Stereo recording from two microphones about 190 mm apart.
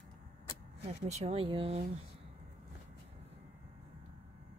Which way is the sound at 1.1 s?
35° right (ahead or behind).